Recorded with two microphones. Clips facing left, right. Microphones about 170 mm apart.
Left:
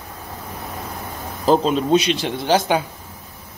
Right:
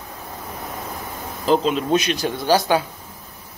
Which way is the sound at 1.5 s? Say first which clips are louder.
Left 2 dB; 40° left (ahead or behind).